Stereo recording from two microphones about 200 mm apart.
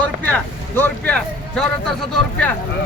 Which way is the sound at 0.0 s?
5° left (ahead or behind).